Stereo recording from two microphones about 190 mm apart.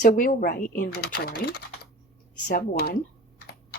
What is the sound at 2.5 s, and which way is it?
Speech, 50° left (ahead or behind).